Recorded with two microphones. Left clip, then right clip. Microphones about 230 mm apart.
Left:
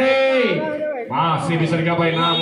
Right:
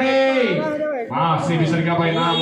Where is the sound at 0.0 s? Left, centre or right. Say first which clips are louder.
Left 1 dB; left.